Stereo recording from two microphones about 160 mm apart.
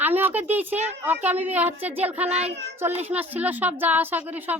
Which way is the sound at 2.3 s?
45° right (ahead or behind).